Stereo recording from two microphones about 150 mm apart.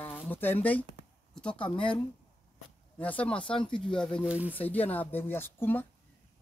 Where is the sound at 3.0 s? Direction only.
10° left (ahead or behind).